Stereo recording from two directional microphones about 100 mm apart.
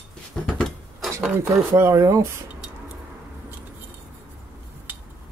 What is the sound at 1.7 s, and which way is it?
Speech, 30° right (ahead or behind).